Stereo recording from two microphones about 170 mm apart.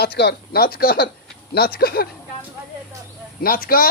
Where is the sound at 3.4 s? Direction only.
60° left (ahead or behind).